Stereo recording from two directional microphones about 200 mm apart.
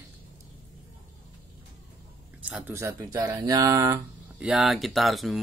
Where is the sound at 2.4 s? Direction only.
10° right (ahead or behind).